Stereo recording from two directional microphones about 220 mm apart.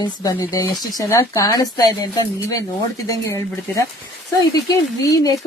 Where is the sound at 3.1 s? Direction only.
15° left (ahead or behind).